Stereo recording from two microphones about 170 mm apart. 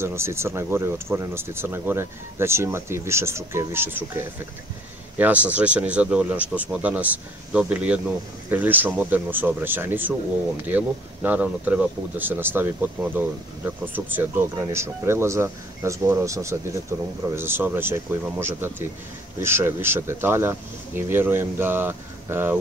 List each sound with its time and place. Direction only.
0.0 s speech: 15° right (ahead or behind)
5.1 s speech: 10° right (ahead or behind)